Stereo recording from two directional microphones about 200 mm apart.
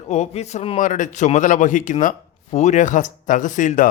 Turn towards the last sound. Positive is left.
turn(degrees=40)  # may be behind; listen again after turning